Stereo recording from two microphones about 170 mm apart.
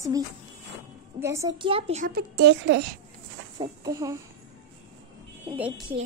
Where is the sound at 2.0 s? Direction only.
70° right (ahead or behind).